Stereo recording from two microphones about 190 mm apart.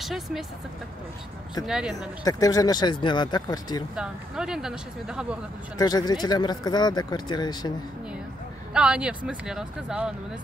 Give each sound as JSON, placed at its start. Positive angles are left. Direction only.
{"t": 0.0, "sound": "speech", "side_deg": 0}
{"t": 1.6, "sound": "speech", "side_deg": -5}
{"t": 2.2, "sound": "speech", "side_deg": 20}
{"t": 3.9, "sound": "speech", "side_deg": -5}
{"t": 5.8, "sound": "speech", "side_deg": 20}
{"t": 8.7, "sound": "speech", "side_deg": -5}